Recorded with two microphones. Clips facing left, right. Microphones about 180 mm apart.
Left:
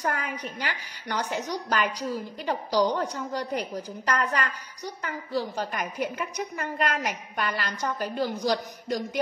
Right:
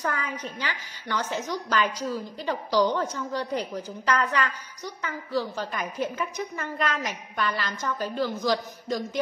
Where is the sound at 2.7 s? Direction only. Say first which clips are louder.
Right 1 dB; 40° left (ahead or behind).